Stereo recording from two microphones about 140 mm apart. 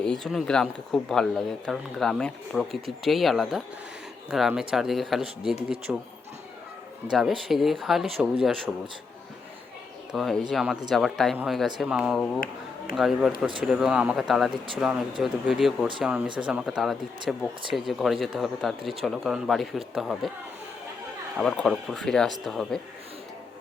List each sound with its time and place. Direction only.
0.0 s speech: 5° left (ahead or behind)
7.1 s speech: centre (ahead or behind)
10.1 s speech: centre (ahead or behind)
21.3 s speech: 5° left (ahead or behind)